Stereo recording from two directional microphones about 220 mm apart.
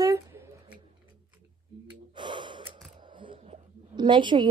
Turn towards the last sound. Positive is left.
turn(degrees=-20)  # may be behind; listen again after turning